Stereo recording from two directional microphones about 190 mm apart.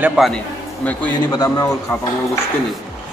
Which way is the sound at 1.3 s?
15° left (ahead or behind).